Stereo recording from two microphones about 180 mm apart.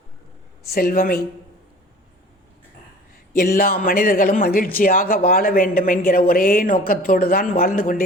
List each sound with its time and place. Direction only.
0.7 s speech: 55° left (ahead or behind)
3.3 s speech: 55° left (ahead or behind)